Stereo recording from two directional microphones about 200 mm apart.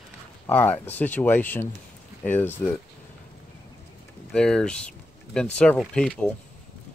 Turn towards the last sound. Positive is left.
turn(degrees=5)  # may be behind; listen again after turning